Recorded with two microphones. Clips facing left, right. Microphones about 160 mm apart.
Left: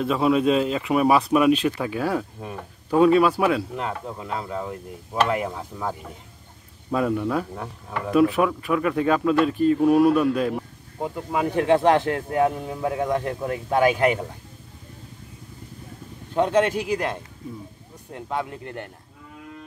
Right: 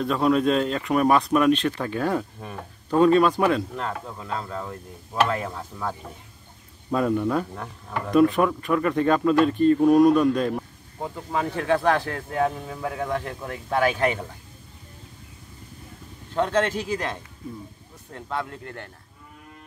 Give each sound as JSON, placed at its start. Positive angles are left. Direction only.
{"t": 0.0, "sound": "speech", "side_deg": 5}
{"t": 6.9, "sound": "speech", "side_deg": 0}
{"t": 16.3, "sound": "speech", "side_deg": 15}